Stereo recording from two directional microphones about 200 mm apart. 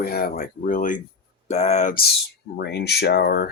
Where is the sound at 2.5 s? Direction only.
55° left (ahead or behind).